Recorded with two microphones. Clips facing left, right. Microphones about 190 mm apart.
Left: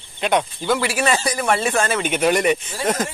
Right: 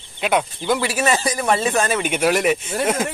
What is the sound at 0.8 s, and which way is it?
A man's voice, 20° right (ahead or behind).